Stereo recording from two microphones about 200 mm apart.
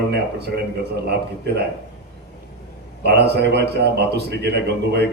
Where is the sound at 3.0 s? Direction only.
55° right (ahead or behind).